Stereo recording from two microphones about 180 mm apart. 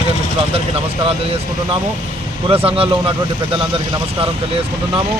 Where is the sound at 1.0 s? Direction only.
30° right (ahead or behind).